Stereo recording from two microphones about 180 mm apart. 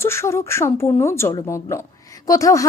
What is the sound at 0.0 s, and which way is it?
Speech, 15° left (ahead or behind).